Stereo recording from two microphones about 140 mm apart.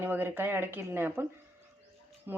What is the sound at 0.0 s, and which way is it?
Speech, 15° right (ahead or behind).